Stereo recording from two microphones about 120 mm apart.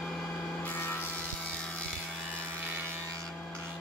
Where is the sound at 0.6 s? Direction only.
15° left (ahead or behind).